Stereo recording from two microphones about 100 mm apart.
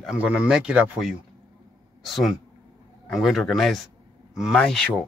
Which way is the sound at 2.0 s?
Centre (ahead or behind).